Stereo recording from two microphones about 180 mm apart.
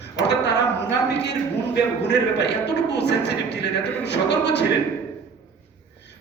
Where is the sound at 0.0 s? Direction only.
70° left (ahead or behind).